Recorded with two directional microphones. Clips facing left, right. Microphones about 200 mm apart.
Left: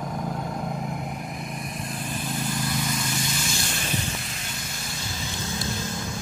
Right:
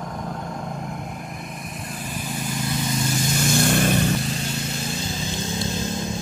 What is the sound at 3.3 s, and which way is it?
Vehicle, 55° right (ahead or behind).